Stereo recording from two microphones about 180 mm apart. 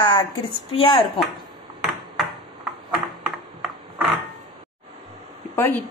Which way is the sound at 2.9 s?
5° right (ahead or behind).